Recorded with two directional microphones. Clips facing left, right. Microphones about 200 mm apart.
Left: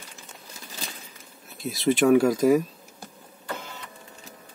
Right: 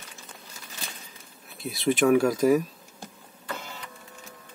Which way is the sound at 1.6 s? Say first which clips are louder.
Left 2 dB; centre (ahead or behind).